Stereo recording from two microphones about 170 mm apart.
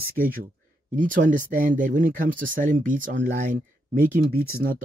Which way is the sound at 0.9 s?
50° right (ahead or behind).